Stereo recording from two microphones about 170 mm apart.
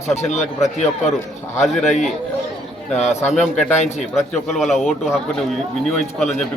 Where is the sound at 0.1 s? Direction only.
40° left (ahead or behind).